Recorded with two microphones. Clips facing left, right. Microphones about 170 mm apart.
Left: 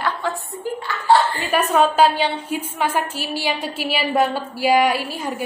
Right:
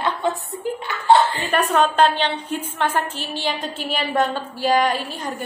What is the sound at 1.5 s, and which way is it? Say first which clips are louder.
A woman's voice: left 1 dB; 10° left (ahead or behind).